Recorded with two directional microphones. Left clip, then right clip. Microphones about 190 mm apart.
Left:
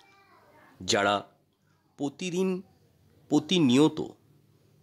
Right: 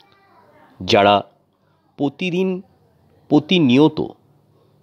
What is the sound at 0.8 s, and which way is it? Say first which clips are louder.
Speech: right 12 dB; 20° right (ahead or behind).